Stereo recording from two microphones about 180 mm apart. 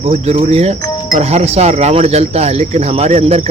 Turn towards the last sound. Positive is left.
turn(degrees=-35)  # may be behind; listen again after turning